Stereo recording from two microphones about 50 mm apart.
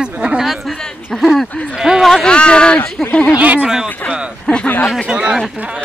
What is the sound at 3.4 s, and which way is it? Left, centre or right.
Speech, right.